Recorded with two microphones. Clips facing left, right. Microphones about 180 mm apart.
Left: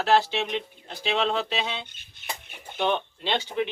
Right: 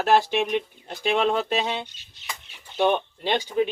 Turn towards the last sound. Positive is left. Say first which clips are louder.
# right 3 dB
turn(degrees=-15)  # may be behind; listen again after turning